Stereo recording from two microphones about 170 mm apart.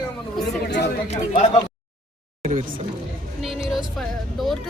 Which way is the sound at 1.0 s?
40° left (ahead or behind).